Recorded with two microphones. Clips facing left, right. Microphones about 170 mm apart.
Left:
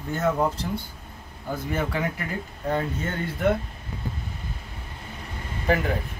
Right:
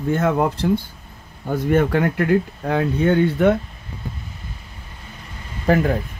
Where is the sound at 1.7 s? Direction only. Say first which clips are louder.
Right 10 dB; 60° right (ahead or behind).